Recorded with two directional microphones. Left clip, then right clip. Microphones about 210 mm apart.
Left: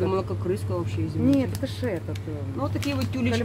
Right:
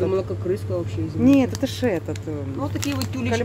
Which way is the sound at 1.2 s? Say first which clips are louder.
Right 6 dB; 35° right (ahead or behind).